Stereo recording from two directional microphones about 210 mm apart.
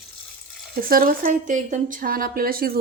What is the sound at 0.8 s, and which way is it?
Speech, 45° right (ahead or behind).